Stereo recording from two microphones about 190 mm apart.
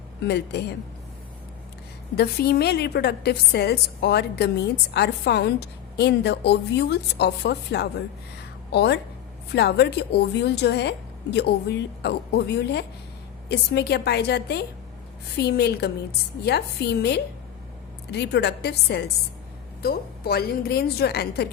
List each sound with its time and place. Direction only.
0.2 s a woman's voice: 60° left (ahead or behind)
2.1 s a woman's voice: 55° left (ahead or behind)